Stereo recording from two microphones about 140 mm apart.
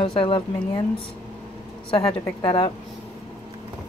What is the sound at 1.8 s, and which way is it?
Speech, 40° left (ahead or behind).